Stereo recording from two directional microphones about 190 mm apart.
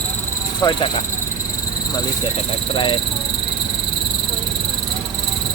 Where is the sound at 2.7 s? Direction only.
25° left (ahead or behind).